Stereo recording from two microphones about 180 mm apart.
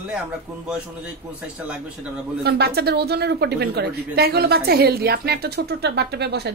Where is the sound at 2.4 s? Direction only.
65° right (ahead or behind).